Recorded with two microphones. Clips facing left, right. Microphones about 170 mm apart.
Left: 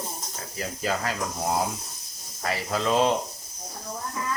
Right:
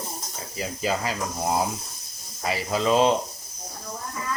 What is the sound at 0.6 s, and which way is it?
Speech, 10° right (ahead or behind).